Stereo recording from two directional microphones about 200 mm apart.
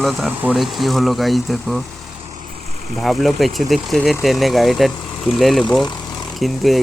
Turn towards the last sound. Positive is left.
turn(degrees=0)  # may be behind; listen again after turning